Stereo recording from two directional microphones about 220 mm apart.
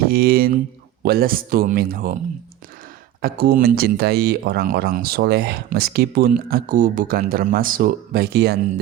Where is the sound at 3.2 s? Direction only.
45° right (ahead or behind).